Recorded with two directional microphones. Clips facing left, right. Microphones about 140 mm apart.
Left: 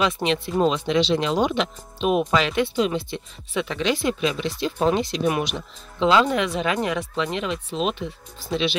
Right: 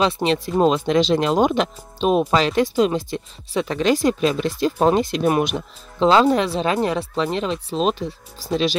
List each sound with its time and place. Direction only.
0.0 s speech: 35° right (ahead or behind)
6.0 s speech: 35° right (ahead or behind)